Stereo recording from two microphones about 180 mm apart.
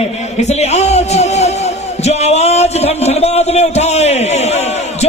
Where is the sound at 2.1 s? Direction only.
35° left (ahead or behind).